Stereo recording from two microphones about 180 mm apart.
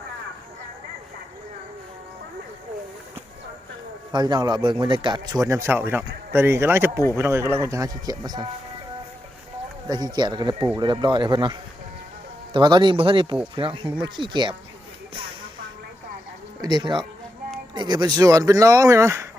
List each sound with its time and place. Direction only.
4.1 s speech: 25° right (ahead or behind)
9.8 s speech: 25° right (ahead or behind)
12.5 s speech: 25° right (ahead or behind)
16.6 s speech: 20° right (ahead or behind)